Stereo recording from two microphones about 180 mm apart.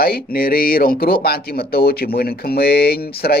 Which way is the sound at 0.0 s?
55° left (ahead or behind).